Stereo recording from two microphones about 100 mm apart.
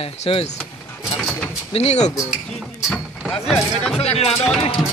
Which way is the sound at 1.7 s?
90° left.